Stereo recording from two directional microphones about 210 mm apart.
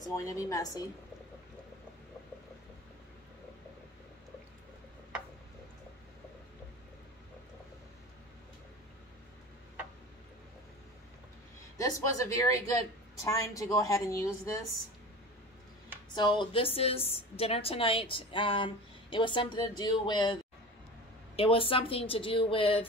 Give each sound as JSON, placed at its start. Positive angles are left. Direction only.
{"t": 0.1, "sound": "a woman's voice", "side_deg": 15}
{"t": 11.8, "sound": "a woman's voice", "side_deg": 15}
{"t": 16.2, "sound": "a woman's voice", "side_deg": 20}
{"t": 21.4, "sound": "a woman's voice", "side_deg": 25}